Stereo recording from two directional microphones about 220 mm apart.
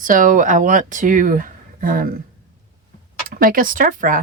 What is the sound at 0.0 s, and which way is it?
Speech, 35° right (ahead or behind).